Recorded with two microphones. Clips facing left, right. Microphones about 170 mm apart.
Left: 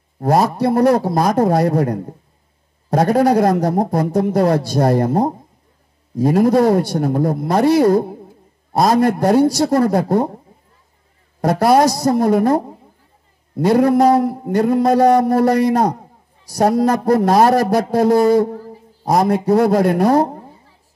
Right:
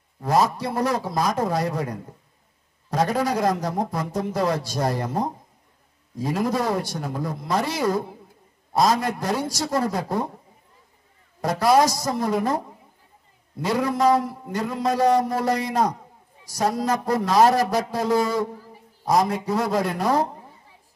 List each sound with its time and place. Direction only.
0.2 s a man's voice: 60° left (ahead or behind)
11.4 s a man's voice: 60° left (ahead or behind)